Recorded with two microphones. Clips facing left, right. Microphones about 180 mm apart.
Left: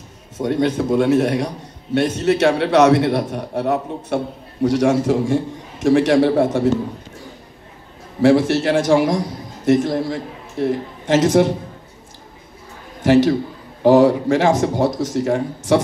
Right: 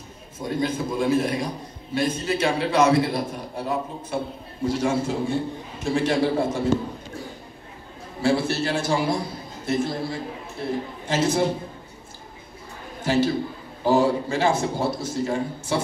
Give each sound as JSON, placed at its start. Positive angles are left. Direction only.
{"t": 0.4, "sound": "a man's voice", "side_deg": 70}
{"t": 8.2, "sound": "a man's voice", "side_deg": 90}
{"t": 13.0, "sound": "a man's voice", "side_deg": 80}